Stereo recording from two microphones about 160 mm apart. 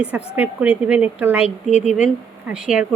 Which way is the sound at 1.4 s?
45° left (ahead or behind).